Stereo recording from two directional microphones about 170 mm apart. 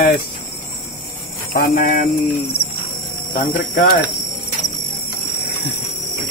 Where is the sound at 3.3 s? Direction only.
55° left (ahead or behind).